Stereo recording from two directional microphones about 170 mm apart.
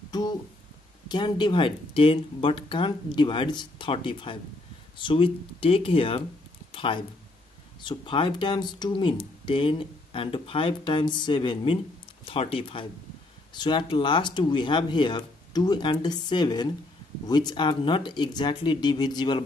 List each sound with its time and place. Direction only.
0.1 s speech: 25° left (ahead or behind)
6.7 s a sound: 30° left (ahead or behind)
7.8 s speech: 30° left (ahead or behind)